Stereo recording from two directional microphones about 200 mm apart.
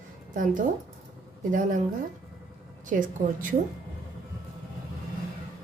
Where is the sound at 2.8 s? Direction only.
40° right (ahead or behind).